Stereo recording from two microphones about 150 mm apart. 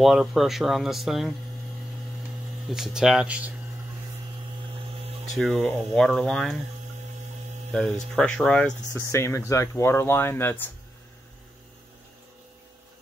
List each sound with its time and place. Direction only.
0.0 s speech: 5° right (ahead or behind)
2.7 s speech: 5° right (ahead or behind)
5.4 s speech: 5° left (ahead or behind)
7.7 s speech: 5° left (ahead or behind)
9.0 s speech: 20° left (ahead or behind)